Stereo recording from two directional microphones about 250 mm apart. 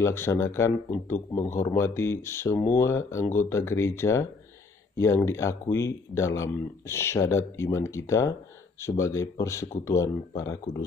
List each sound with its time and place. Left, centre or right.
0.0 s speech: centre